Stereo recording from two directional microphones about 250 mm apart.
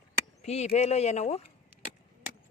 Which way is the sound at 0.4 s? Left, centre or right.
Left.